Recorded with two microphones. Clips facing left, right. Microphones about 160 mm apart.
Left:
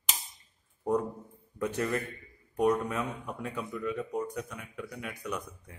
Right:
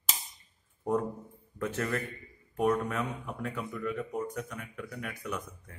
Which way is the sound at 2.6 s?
15° left (ahead or behind).